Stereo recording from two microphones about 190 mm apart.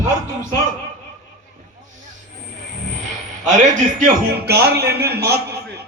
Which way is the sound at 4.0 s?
55° right (ahead or behind).